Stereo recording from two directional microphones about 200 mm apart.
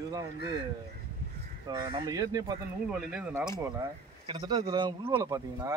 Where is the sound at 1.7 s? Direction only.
20° right (ahead or behind).